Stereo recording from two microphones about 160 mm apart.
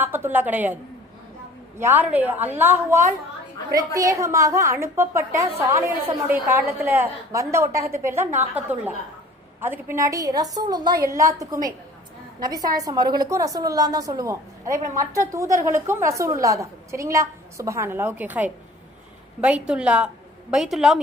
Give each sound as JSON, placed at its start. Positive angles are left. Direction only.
{"t": 0.0, "sound": "a woman's voice", "side_deg": -15}
{"t": 1.8, "sound": "a woman's voice", "side_deg": -10}